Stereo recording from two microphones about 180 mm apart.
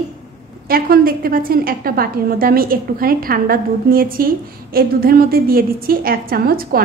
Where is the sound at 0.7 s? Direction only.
55° right (ahead or behind).